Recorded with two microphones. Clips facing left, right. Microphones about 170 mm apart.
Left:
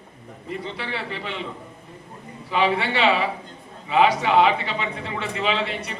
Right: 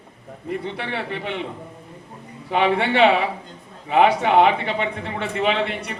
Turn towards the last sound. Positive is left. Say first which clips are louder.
# right 3 dB
turn(degrees=-55)  # may be behind; listen again after turning